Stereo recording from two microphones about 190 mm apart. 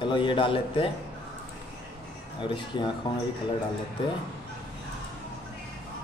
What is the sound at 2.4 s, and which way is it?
Speech, 25° left (ahead or behind).